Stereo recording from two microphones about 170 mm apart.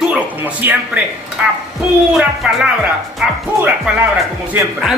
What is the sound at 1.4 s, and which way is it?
Speech, 10° right (ahead or behind).